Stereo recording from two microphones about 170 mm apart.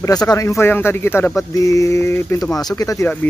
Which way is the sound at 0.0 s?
20° left (ahead or behind).